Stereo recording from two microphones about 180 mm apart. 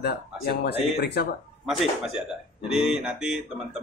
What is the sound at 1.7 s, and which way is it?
Speech, centre (ahead or behind).